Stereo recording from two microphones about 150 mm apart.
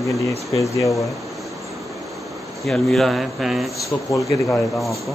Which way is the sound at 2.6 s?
5° left (ahead or behind).